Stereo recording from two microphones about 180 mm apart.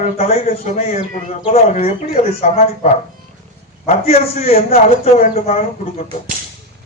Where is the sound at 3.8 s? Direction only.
35° left (ahead or behind).